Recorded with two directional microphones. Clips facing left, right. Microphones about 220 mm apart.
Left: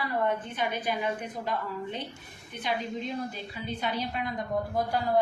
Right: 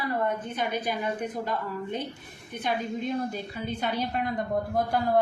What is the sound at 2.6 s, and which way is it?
A woman's voice, 50° right (ahead or behind).